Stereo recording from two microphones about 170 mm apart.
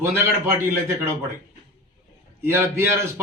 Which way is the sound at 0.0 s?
15° right (ahead or behind).